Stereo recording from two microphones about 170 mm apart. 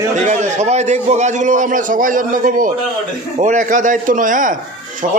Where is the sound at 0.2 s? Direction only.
45° right (ahead or behind).